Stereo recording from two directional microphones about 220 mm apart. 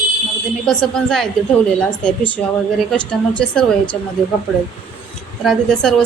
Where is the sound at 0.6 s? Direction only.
5° left (ahead or behind).